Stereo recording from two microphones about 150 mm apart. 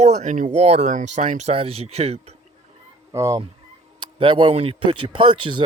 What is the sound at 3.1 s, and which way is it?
Fowl, 20° right (ahead or behind).